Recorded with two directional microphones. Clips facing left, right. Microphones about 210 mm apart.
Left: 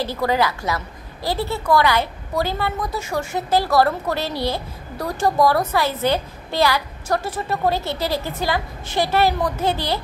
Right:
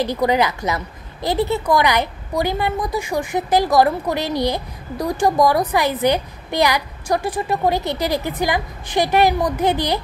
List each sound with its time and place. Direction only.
0.0 s a woman's voice: 15° right (ahead or behind)